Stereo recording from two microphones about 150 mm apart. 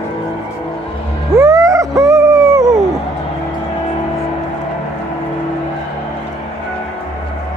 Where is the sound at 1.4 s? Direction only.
20° right (ahead or behind).